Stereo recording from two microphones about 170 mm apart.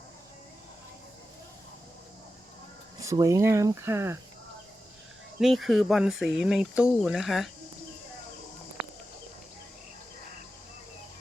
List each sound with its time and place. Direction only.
3.0 s speech: 20° right (ahead or behind)
5.4 s speech: centre (ahead or behind)